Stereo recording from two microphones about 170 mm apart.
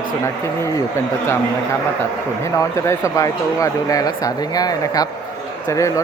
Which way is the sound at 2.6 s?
20° left (ahead or behind).